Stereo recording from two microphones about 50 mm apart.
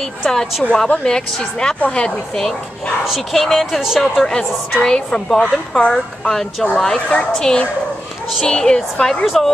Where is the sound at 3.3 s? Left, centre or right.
Centre.